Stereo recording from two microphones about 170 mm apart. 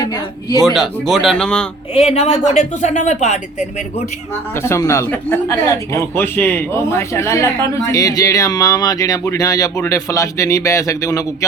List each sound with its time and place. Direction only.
0.6 s speech: centre (ahead or behind)
2.0 s speech: 40° left (ahead or behind)
4.7 s speech: 15° left (ahead or behind)